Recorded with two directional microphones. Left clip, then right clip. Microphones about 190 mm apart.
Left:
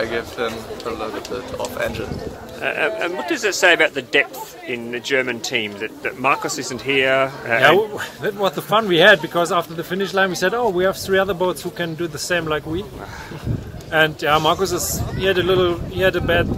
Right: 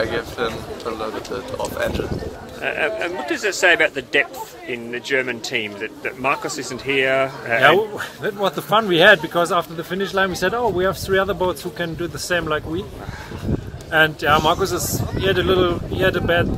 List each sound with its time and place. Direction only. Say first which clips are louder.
0.0 s speech: even; 10° right (ahead or behind)
2.6 s speech: left 1 dB; 25° left (ahead or behind)
13.9 s speech: right 1 dB; 10° left (ahead or behind)